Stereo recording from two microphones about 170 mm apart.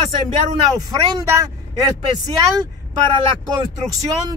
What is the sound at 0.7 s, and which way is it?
Speech, 20° right (ahead or behind).